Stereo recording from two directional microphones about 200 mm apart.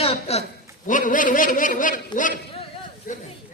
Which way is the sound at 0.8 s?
40° left (ahead or behind).